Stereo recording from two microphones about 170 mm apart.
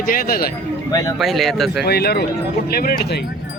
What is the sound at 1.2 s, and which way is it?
Speech, centre (ahead or behind).